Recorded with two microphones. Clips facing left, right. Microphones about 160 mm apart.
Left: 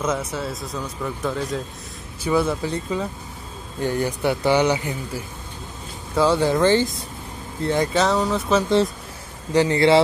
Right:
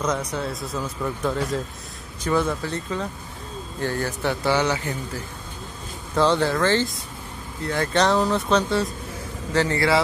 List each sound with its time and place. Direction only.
0.0 s speech: 5° left (ahead or behind)
7.9 s speech: centre (ahead or behind)
9.5 s speech: 15° left (ahead or behind)